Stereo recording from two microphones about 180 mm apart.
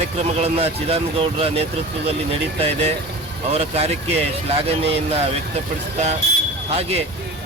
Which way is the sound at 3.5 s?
35° right (ahead or behind).